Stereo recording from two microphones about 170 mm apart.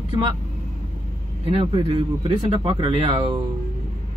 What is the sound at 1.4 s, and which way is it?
Speech, 30° right (ahead or behind).